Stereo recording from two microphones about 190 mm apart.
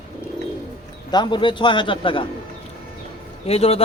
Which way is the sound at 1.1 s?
25° left (ahead or behind).